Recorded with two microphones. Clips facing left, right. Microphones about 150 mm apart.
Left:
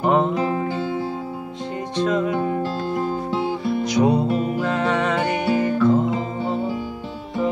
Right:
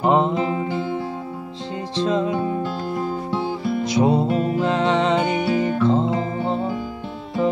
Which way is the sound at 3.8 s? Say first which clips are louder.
Even; 25° right (ahead or behind).